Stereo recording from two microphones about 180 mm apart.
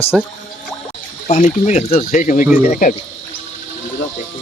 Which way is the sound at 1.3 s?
40° left (ahead or behind).